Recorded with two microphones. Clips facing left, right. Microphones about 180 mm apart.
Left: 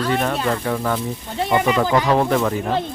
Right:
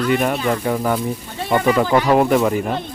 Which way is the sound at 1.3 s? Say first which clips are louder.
Right 1 dB; 20° left (ahead or behind).